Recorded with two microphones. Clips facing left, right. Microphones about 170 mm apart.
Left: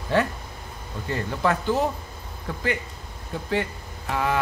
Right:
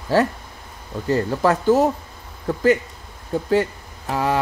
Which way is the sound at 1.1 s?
40° right (ahead or behind).